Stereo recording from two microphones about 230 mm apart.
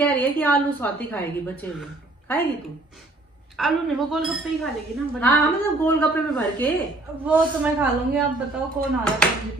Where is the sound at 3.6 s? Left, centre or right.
Centre.